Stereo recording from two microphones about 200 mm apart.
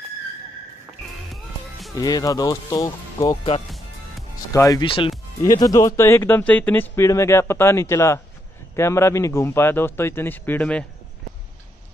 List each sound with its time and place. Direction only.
1.3 s music: centre (ahead or behind)
2.0 s speech: 20° left (ahead or behind)
4.5 s speech: 20° left (ahead or behind)